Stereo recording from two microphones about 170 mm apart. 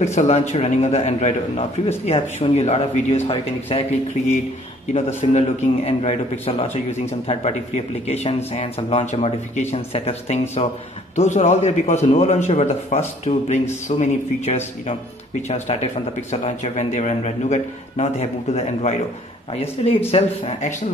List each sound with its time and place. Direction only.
0.0 s a man's voice: 40° left (ahead or behind)
4.9 s a man's voice: 40° left (ahead or behind)